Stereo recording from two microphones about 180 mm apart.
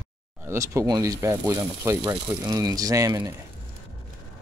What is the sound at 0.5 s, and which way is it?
Speech, 15° right (ahead or behind).